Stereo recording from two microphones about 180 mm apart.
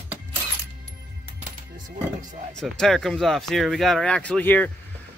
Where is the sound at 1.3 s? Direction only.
45° right (ahead or behind).